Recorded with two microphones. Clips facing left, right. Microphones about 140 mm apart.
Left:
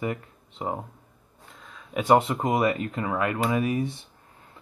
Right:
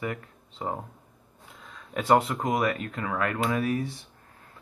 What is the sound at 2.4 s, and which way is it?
Speech, 25° left (ahead or behind).